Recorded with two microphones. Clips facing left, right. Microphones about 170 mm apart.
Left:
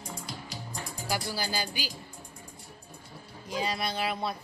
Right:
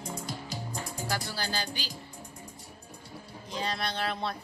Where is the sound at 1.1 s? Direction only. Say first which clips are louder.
Left 3 dB; 10° left (ahead or behind).